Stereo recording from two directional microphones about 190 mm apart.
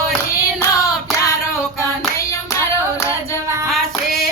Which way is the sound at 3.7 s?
Centre (ahead or behind).